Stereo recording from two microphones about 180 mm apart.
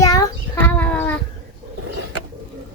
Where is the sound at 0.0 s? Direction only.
20° left (ahead or behind).